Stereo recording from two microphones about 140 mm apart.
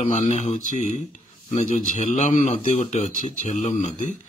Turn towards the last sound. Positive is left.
turn(degrees=55)  # may be behind; listen again after turning